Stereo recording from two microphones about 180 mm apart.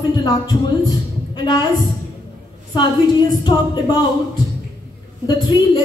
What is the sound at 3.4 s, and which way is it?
Speech, 25° left (ahead or behind).